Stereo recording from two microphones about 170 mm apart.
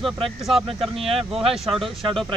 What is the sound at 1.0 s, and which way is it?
Speech, 35° right (ahead or behind).